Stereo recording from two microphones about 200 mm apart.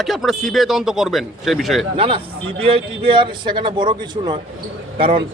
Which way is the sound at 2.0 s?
25° right (ahead or behind).